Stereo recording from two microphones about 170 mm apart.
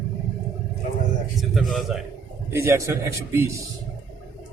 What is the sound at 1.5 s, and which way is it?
Speech, centre (ahead or behind).